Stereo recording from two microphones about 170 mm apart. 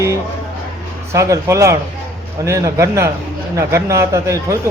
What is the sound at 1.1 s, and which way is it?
A man's voice, 15° right (ahead or behind).